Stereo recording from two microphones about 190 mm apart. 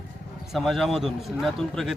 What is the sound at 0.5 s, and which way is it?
Speech, centre (ahead or behind).